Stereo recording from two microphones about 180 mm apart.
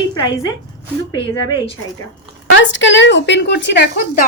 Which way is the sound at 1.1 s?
25° left (ahead or behind).